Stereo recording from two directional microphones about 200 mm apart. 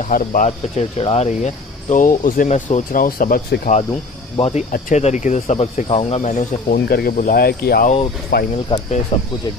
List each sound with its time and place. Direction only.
0.0 s speech: 40° left (ahead or behind)
4.4 s speech: 30° left (ahead or behind)
6.9 s speech: 50° left (ahead or behind)